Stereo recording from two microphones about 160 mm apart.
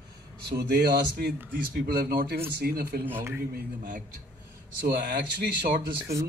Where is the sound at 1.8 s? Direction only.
70° right (ahead or behind).